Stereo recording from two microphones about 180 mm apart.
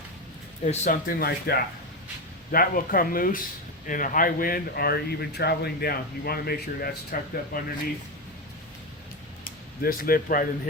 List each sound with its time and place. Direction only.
0.6 s speech: 45° left (ahead or behind)
9.4 s speech: 55° left (ahead or behind)